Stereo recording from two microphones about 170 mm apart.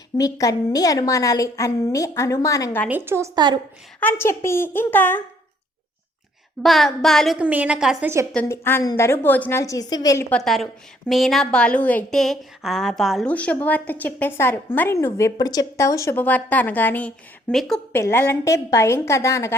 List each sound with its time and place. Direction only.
0.2 s a woman's voice: 20° left (ahead or behind)
2.9 s a woman's voice: 15° right (ahead or behind)
4.0 s a woman's voice: 15° left (ahead or behind)
6.6 s a woman's voice: centre (ahead or behind)
8.0 s a woman's voice: 15° right (ahead or behind)
8.3 s a woman's voice: 10° left (ahead or behind)
10.3 s a woman's voice: centre (ahead or behind)
17.9 s a woman's voice: 15° left (ahead or behind)